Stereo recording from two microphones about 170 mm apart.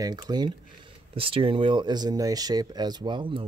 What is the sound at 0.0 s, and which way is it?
Speech, 25° right (ahead or behind).